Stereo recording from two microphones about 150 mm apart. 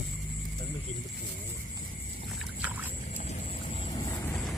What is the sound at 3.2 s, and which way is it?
Vehicle, 45° left (ahead or behind).